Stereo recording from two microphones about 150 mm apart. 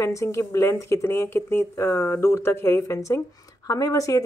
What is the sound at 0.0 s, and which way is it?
A woman's voice, 20° left (ahead or behind).